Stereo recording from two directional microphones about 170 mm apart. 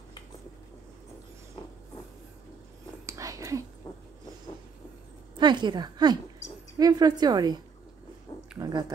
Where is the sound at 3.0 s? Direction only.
20° right (ahead or behind).